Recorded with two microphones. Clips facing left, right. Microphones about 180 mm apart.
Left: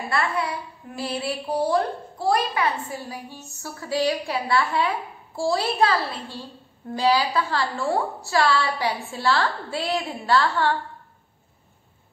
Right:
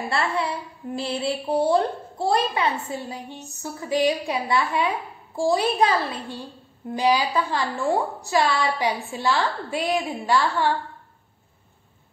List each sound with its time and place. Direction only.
0.1 s a woman's voice: 25° right (ahead or behind)